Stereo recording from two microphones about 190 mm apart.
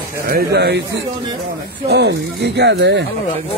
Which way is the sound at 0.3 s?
55° right (ahead or behind).